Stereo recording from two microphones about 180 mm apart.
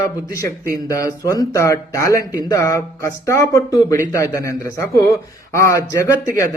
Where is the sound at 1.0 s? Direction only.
20° left (ahead or behind).